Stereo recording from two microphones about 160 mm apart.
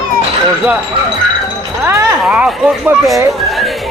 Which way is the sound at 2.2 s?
5° right (ahead or behind).